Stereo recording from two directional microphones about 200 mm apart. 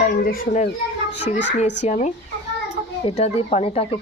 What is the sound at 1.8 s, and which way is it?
Speech, 35° left (ahead or behind).